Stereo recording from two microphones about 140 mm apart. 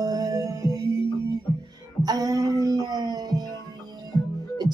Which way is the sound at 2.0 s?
25° right (ahead or behind).